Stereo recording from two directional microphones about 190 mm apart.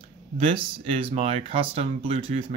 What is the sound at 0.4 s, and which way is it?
Speech, 30° right (ahead or behind).